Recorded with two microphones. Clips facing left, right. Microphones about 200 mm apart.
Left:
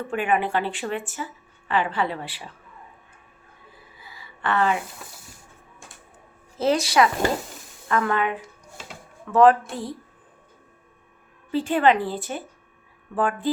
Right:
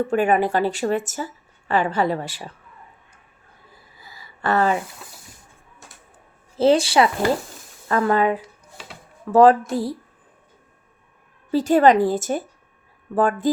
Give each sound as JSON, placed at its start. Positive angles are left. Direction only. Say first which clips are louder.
{"t": 0.1, "sound": "speech", "louder": "right 1 dB", "side_deg": -40}
{"t": 3.9, "sound": "a sound", "louder": "right 2 dB", "side_deg": -40}
{"t": 6.6, "sound": "speech", "louder": "right 4 dB", "side_deg": -30}
{"t": 11.5, "sound": "speech", "louder": "right 5 dB", "side_deg": -40}